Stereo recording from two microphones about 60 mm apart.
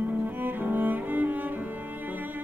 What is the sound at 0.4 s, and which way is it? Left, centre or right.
Cello, right.